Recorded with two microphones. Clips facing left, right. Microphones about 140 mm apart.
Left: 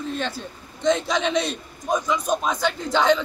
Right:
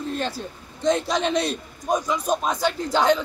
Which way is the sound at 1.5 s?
40° right (ahead or behind).